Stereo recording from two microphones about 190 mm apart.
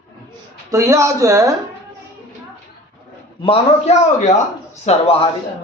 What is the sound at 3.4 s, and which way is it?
A man's voice, 30° left (ahead or behind).